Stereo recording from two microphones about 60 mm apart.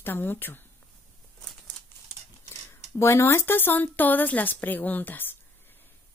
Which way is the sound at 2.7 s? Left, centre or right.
Left.